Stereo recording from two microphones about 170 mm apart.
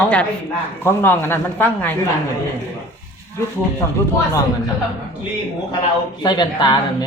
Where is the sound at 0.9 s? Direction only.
15° left (ahead or behind).